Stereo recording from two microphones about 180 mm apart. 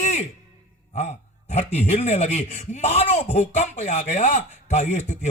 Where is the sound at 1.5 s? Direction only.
40° left (ahead or behind).